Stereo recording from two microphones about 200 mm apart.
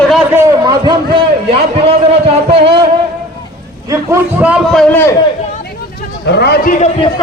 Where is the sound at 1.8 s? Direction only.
30° right (ahead or behind).